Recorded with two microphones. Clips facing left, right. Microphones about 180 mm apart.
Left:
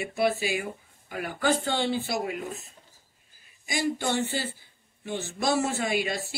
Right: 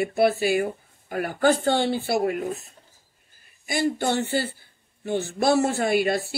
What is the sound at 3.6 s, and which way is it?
Speech, 60° right (ahead or behind).